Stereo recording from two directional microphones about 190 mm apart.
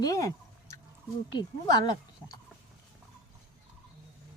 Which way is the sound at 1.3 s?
20° left (ahead or behind).